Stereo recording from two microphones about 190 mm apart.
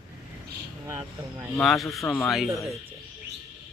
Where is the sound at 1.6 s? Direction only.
Centre (ahead or behind).